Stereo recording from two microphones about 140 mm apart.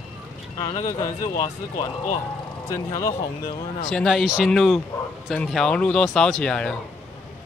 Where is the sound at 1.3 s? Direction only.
45° left (ahead or behind).